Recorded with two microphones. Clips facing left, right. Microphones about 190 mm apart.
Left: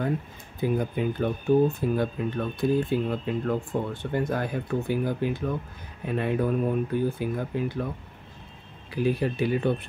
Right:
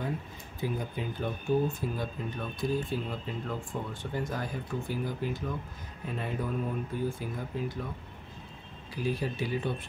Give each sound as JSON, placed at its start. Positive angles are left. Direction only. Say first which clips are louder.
{"t": 0.6, "sound": "speech", "louder": "left 8 dB", "side_deg": 55}
{"t": 8.9, "sound": "speech", "louder": "left 7 dB", "side_deg": 60}